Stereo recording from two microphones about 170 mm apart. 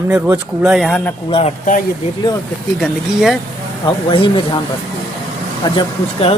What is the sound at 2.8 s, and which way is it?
Speech, centre (ahead or behind).